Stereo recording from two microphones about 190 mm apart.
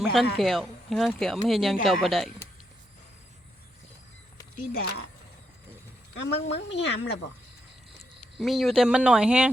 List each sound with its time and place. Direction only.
0.0 s speech: centre (ahead or behind)
4.5 s speech: 50° left (ahead or behind)
6.1 s a woman's voice: 70° left (ahead or behind)
8.4 s speech: centre (ahead or behind)